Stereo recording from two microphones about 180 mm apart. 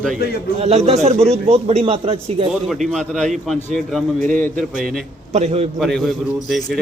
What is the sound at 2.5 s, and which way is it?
A man's voice, centre (ahead or behind).